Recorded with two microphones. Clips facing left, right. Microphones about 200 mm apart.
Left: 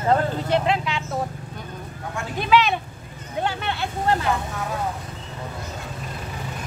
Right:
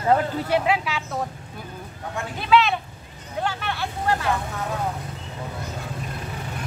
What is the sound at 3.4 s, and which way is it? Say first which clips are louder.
Vehicle: left 1 dB; 20° left (ahead or behind).